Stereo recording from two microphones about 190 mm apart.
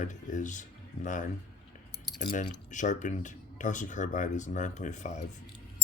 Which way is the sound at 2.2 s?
40° left (ahead or behind).